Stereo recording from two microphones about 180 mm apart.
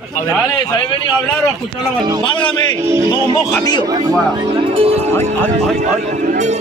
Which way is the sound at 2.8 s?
15° right (ahead or behind).